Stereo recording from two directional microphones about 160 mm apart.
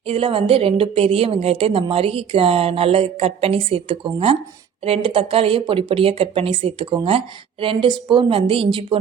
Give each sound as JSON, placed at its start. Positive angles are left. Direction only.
{"t": 0.1, "sound": "a woman's voice", "side_deg": -35}